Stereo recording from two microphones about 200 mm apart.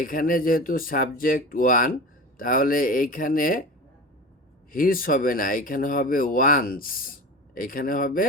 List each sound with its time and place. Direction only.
0.0 s speech: 45° left (ahead or behind)
4.7 s speech: 45° left (ahead or behind)